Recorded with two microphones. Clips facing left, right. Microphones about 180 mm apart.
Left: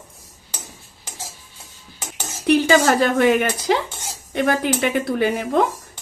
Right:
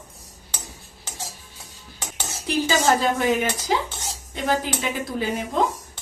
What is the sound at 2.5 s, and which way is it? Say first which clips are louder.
Speech: left 5 dB; 70° left (ahead or behind).